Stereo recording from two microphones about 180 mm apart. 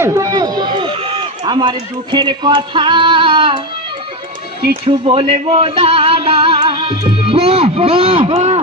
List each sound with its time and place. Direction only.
0.0 s speech: 15° right (ahead or behind)
4.9 s music: 30° right (ahead or behind)
7.3 s speech: 30° right (ahead or behind)